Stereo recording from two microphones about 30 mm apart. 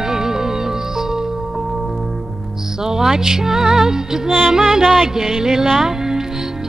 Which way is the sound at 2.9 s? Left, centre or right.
Centre.